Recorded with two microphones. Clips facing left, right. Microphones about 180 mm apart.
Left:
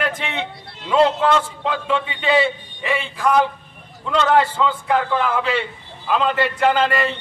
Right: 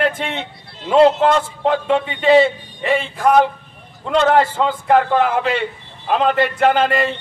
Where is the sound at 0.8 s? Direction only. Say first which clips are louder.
Right 4 dB; 45° right (ahead or behind).